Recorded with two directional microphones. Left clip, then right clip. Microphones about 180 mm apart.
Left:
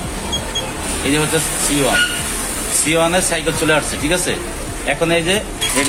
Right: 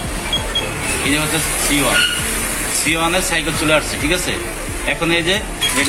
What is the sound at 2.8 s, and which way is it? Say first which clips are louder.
Speech: left 2 dB; 35° left (ahead or behind).